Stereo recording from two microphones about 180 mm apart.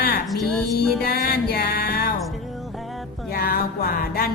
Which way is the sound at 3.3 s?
55° left (ahead or behind).